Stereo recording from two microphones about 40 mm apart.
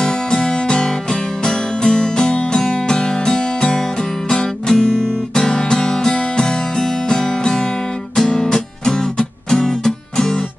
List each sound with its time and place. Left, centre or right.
0.0 s music: centre